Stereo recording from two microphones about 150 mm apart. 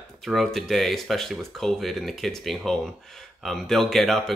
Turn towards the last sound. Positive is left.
turn(degrees=0)  # may be behind; listen again after turning